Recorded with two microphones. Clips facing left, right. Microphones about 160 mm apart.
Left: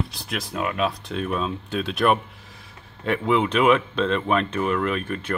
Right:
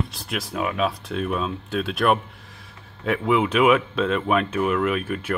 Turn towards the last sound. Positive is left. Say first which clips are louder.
# right 2 dB
turn(degrees=-5)  # may be behind; listen again after turning